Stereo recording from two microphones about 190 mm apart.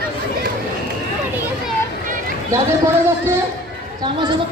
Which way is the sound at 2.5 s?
15° right (ahead or behind).